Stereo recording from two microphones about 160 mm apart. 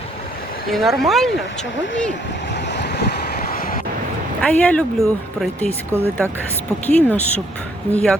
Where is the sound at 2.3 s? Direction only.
90° left; by 3.8 s 65° left (ahead or behind).